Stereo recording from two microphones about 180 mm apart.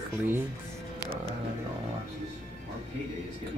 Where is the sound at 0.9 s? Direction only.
30° right (ahead or behind).